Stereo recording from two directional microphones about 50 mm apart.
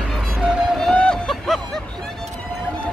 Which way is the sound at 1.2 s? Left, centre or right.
Centre.